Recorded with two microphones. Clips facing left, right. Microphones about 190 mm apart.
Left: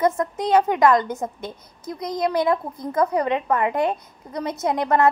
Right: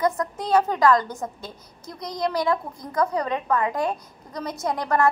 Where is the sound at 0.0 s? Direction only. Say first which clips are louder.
Left 3 dB; 20° left (ahead or behind).